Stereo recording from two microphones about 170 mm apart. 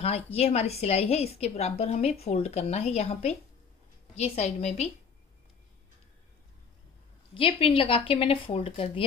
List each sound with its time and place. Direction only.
0.0 s a woman's voice: 40° left (ahead or behind)
7.3 s a woman's voice: 35° left (ahead or behind)